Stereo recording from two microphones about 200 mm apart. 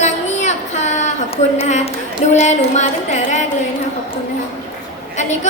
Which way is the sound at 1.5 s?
35° left (ahead or behind).